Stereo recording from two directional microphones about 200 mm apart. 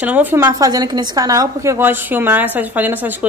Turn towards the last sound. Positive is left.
turn(degrees=-10)  # may be behind; listen again after turning